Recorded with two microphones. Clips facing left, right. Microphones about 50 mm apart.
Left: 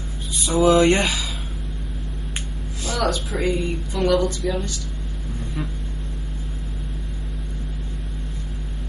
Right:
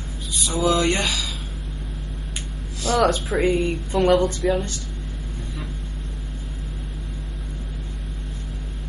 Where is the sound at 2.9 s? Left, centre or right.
Left.